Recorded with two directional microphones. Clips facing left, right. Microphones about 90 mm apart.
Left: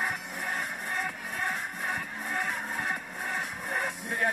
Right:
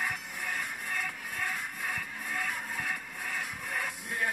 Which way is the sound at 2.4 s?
30° left (ahead or behind).